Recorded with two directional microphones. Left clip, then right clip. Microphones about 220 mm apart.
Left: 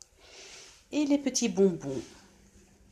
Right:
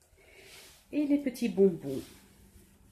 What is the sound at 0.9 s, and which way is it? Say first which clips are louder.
Speech: left 2 dB; centre (ahead or behind).